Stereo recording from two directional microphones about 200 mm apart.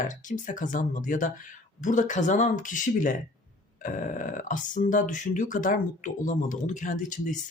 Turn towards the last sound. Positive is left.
turn(degrees=40)  # may be behind; listen again after turning